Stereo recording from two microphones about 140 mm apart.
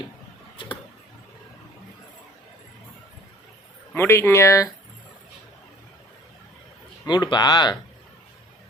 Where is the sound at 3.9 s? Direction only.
20° left (ahead or behind).